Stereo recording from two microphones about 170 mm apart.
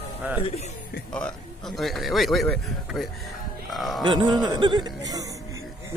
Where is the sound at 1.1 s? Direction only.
5° left (ahead or behind).